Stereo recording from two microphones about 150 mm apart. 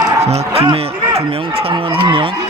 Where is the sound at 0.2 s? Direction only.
45° right (ahead or behind).